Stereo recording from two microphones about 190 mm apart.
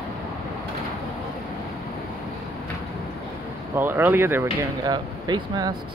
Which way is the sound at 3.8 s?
10° right (ahead or behind).